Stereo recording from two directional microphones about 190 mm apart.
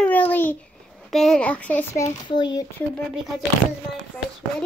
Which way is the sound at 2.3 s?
20° left (ahead or behind).